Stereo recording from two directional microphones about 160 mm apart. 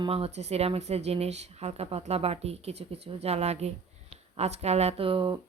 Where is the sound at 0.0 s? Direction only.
40° right (ahead or behind).